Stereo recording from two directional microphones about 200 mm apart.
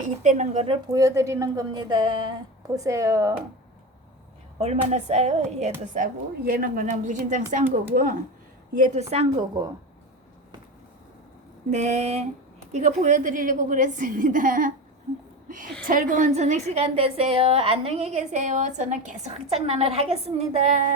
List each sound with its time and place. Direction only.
0.0 s a woman's voice: 40° right (ahead or behind)
0.9 s a woman's voice: 15° right (ahead or behind)
4.5 s a woman's voice: 30° right (ahead or behind)
11.7 s a woman's voice: 35° right (ahead or behind)